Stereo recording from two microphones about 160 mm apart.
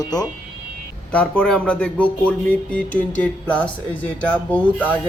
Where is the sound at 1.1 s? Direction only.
10° left (ahead or behind).